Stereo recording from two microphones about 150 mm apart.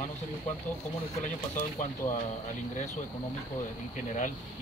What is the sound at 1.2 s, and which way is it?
Speech, 55° left (ahead or behind).